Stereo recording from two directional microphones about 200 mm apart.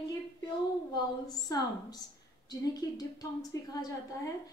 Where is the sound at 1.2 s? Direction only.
20° left (ahead or behind).